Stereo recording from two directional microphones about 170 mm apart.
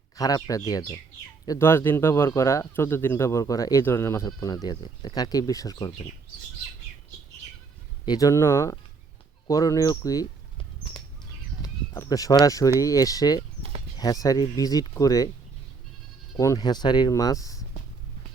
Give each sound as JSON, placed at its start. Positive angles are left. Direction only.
{"t": 0.2, "sound": "speech", "side_deg": 20}
{"t": 8.0, "sound": "speech", "side_deg": 20}
{"t": 11.6, "sound": "a sound", "side_deg": 20}
{"t": 12.8, "sound": "speech", "side_deg": 20}
{"t": 16.4, "sound": "speech", "side_deg": 20}